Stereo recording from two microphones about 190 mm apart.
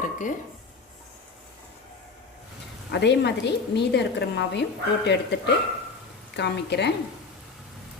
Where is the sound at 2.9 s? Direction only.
60° left (ahead or behind).